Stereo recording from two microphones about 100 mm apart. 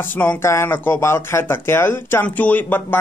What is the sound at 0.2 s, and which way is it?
Speech, 25° left (ahead or behind).